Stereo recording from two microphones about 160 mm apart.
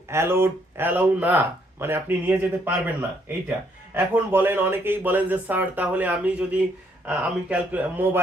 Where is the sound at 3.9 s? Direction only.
10° right (ahead or behind).